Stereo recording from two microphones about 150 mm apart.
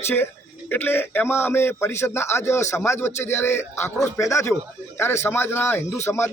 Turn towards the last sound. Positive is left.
turn(degrees=15)  # may be behind; listen again after turning